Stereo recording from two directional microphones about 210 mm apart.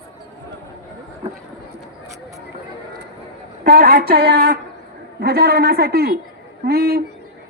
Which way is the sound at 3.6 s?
45° right (ahead or behind).